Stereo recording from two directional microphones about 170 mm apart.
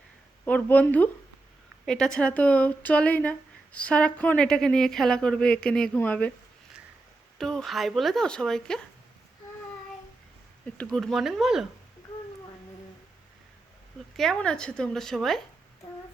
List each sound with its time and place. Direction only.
0.4 s a woman's voice: 10° left (ahead or behind)
7.3 s a woman's voice: centre (ahead or behind)
10.8 s a woman's voice: centre (ahead or behind)
14.2 s a woman's voice: 5° left (ahead or behind)